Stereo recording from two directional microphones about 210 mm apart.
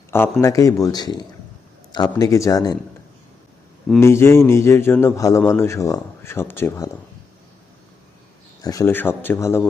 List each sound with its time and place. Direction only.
0.1 s speech: 10° left (ahead or behind)
4.0 s speech: 10° left (ahead or behind)
8.6 s speech: 15° left (ahead or behind)